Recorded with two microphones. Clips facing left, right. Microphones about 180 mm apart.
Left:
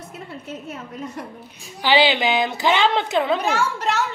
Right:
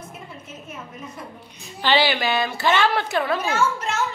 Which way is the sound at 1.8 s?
15° left (ahead or behind).